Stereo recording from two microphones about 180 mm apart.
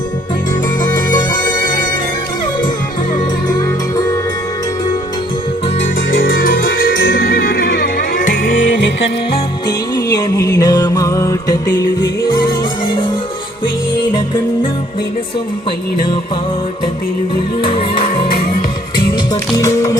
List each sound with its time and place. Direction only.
0.8 s music: 25° left (ahead or behind)
1.5 s music: 50° left (ahead or behind)
3.5 s music: 20° left (ahead or behind)
6.1 s music: 55° left (ahead or behind); by 7.1 s 75° left (ahead or behind)
7.1 s music: 55° left (ahead or behind)
9.6 s music: 20° left (ahead or behind)
17.6 s music: 30° left (ahead or behind)
18.9 s music: 25° left (ahead or behind)